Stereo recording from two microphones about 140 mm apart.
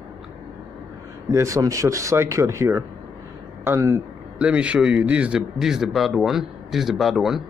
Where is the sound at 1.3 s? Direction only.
20° right (ahead or behind).